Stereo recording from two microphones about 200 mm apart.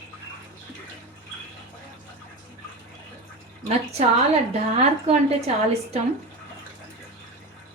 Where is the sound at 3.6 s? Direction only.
30° right (ahead or behind).